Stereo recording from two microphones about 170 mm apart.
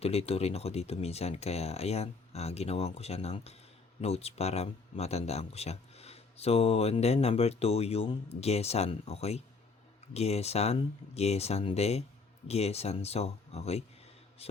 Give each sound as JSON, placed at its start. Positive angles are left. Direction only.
{"t": 0.0, "sound": "speech", "side_deg": 35}